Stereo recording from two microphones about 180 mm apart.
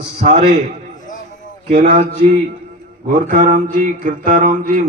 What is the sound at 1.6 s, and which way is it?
Speech, 45° right (ahead or behind).